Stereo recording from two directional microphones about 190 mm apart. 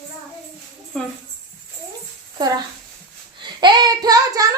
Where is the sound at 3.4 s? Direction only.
25° right (ahead or behind).